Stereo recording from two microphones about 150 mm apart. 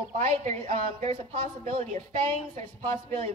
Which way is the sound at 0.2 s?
55° right (ahead or behind).